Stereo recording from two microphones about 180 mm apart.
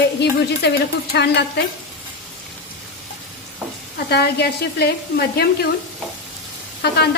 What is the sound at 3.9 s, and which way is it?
Speech, 65° left (ahead or behind).